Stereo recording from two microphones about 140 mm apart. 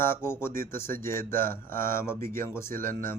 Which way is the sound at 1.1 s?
90° right.